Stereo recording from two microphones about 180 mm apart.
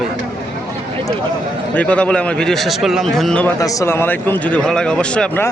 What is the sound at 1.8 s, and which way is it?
Speech, 5° left (ahead or behind).